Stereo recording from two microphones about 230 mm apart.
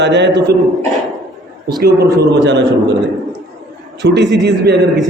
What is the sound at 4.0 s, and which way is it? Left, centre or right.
Speech, right.